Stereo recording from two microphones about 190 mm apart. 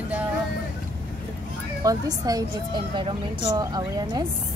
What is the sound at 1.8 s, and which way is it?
Speech, 20° right (ahead or behind).